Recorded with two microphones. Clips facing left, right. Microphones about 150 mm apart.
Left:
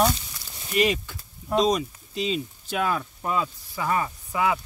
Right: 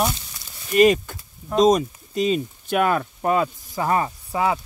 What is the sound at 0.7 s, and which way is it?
Speech, 45° right (ahead or behind).